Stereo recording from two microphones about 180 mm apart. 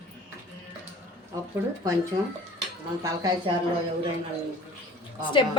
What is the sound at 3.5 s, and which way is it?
Speech, 25° right (ahead or behind).